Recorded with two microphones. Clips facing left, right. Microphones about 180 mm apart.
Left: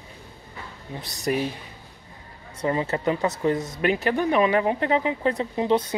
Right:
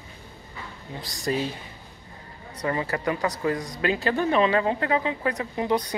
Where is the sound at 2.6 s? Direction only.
20° left (ahead or behind).